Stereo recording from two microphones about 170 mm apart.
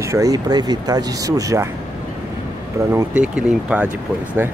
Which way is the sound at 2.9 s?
5° right (ahead or behind).